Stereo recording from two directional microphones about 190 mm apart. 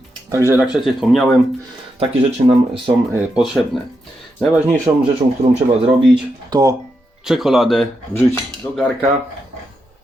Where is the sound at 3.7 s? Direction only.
Centre (ahead or behind).